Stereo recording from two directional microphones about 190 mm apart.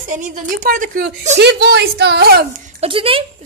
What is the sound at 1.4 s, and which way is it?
A woman's voice, 60° right (ahead or behind).